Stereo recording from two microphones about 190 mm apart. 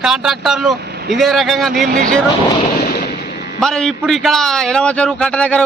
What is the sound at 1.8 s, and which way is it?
Speech, 45° right (ahead or behind).